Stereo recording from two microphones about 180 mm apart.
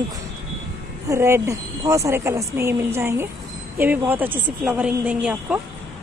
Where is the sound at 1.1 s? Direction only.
15° right (ahead or behind).